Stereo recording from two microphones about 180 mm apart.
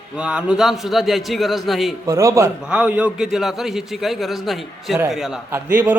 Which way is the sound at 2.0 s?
15° right (ahead or behind).